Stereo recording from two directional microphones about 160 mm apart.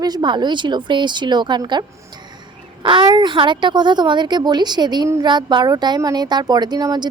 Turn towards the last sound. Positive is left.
turn(degrees=-25)  # may be behind; listen again after turning